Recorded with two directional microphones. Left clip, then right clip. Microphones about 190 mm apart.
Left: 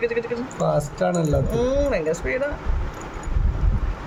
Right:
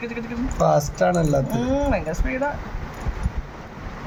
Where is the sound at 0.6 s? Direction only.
5° right (ahead or behind).